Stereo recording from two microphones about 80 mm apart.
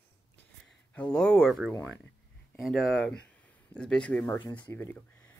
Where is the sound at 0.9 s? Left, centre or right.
Centre.